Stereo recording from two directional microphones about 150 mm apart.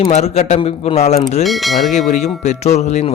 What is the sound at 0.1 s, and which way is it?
A man's voice, 45° left (ahead or behind).